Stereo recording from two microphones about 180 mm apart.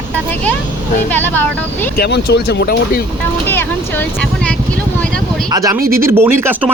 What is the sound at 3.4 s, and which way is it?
Speech, 10° left (ahead or behind).